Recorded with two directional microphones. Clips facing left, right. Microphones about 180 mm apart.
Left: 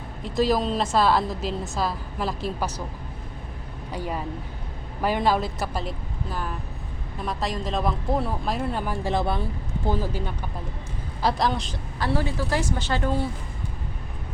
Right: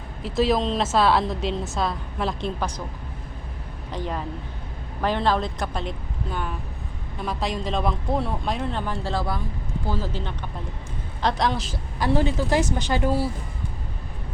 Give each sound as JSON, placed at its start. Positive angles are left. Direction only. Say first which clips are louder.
{"t": 0.2, "sound": "a woman's voice", "louder": "right 1 dB", "side_deg": 0}
{"t": 3.9, "sound": "a woman's voice", "louder": "even", "side_deg": 10}
{"t": 11.9, "sound": "a woman's voice", "louder": "right 4 dB", "side_deg": -15}